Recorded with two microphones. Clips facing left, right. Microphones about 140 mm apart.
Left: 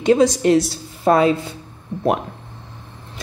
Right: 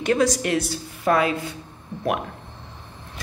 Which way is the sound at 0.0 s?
20° left (ahead or behind).